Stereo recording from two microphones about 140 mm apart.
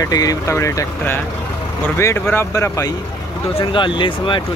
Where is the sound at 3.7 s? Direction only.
35° left (ahead or behind).